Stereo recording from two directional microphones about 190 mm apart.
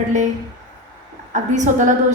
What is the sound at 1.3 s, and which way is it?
Speech, 40° right (ahead or behind).